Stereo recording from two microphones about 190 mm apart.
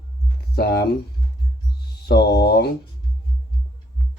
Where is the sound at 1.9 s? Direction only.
55° left (ahead or behind).